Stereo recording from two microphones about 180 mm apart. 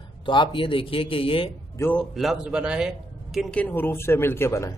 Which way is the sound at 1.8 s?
5° left (ahead or behind).